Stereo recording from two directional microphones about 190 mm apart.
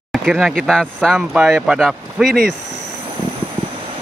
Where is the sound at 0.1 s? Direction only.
Centre (ahead or behind).